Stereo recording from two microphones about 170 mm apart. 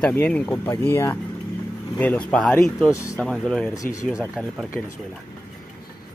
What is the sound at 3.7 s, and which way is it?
Speech, 20° left (ahead or behind).